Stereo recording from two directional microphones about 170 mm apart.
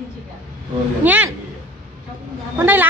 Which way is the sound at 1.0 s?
10° right (ahead or behind).